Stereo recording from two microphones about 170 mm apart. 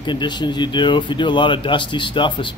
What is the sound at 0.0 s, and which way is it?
Speech, 25° left (ahead or behind).